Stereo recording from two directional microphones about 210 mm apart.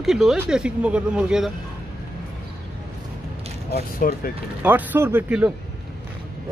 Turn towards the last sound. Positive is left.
turn(degrees=-10)  # may be behind; listen again after turning